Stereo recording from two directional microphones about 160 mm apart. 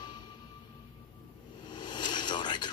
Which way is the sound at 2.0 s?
30° left (ahead or behind).